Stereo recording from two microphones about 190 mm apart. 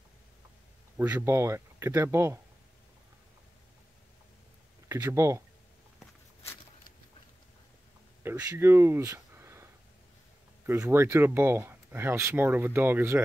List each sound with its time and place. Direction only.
0.9 s speech: 10° right (ahead or behind)
4.8 s speech: 15° right (ahead or behind)
8.2 s speech: 15° right (ahead or behind)
10.7 s speech: 15° right (ahead or behind)